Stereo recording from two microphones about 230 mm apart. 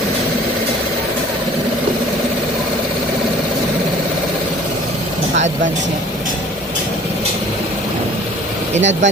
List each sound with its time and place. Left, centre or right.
8.7 s speech: right